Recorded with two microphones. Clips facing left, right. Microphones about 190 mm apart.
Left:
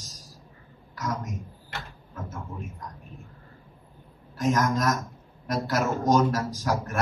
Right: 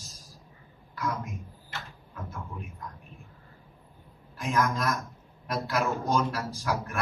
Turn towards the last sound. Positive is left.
turn(degrees=40)  # may be behind; listen again after turning